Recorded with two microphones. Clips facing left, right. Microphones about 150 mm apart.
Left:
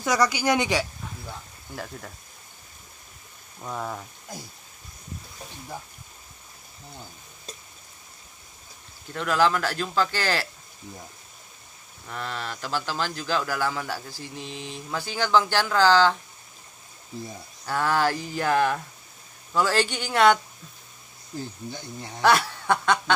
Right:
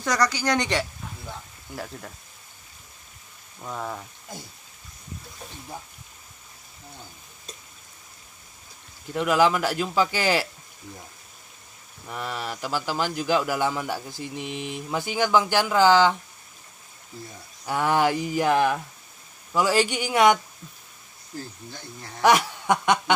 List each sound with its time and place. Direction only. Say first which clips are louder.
0.0 s speech: left 1 dB; 10° left (ahead or behind)
3.6 s speech: even; centre (ahead or behind)
9.1 s speech: right 2 dB; 10° right (ahead or behind)
12.1 s speech: right 2 dB; 10° right (ahead or behind)
17.6 s speech: right 2 dB; 15° right (ahead or behind)
22.2 s snicker: right 1 dB; 15° right (ahead or behind)